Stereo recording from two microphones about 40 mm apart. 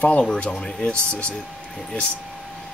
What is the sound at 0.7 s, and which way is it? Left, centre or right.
Speech, left.